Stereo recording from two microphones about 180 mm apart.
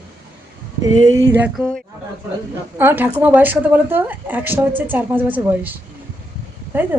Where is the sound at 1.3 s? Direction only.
10° right (ahead or behind).